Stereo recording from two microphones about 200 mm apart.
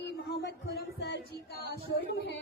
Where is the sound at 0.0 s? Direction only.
55° left (ahead or behind).